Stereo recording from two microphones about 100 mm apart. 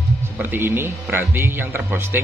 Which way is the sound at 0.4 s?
20° right (ahead or behind).